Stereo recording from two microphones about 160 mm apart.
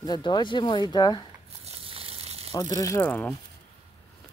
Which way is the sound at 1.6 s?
35° right (ahead or behind).